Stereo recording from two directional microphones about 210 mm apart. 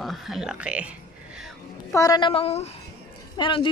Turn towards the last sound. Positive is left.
turn(degrees=25)  # may be behind; listen again after turning